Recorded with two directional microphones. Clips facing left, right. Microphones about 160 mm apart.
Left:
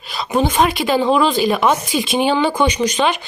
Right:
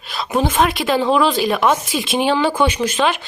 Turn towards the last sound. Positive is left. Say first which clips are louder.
# left 1 dB
turn(degrees=0)  # may be behind; listen again after turning